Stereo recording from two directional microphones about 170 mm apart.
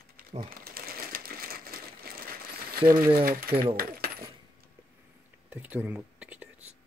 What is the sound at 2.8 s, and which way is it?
Speech, 20° right (ahead or behind).